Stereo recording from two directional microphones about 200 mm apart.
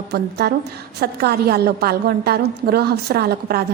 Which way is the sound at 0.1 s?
55° right (ahead or behind).